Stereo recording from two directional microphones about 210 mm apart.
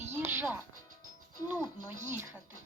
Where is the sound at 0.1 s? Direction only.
10° right (ahead or behind).